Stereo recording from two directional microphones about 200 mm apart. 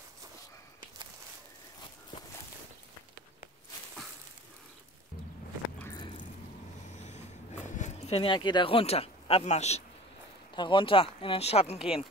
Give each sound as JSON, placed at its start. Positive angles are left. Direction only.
{"t": 5.9, "sound": "squish", "side_deg": 20}
{"t": 6.9, "sound": "a sound", "side_deg": 35}
{"t": 10.5, "sound": "speech", "side_deg": 25}